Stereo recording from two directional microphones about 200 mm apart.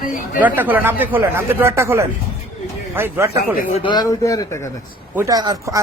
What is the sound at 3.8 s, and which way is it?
Speech, 20° left (ahead or behind).